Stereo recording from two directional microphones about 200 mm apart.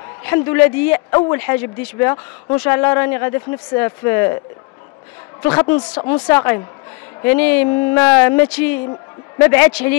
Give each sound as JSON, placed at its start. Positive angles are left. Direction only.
{"t": 0.2, "sound": "a man's voice", "side_deg": 10}
{"t": 5.4, "sound": "a man's voice", "side_deg": 10}